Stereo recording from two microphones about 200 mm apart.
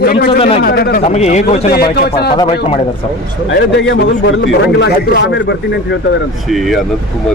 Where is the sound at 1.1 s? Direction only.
35° left (ahead or behind).